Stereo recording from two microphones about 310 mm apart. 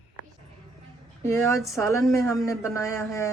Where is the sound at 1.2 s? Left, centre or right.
Centre.